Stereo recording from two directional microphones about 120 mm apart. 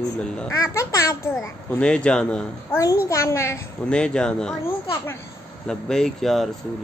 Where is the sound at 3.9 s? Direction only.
5° left (ahead or behind).